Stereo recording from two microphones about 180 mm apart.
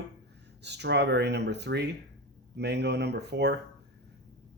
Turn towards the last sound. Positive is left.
turn(degrees=-70)  # may be behind; listen again after turning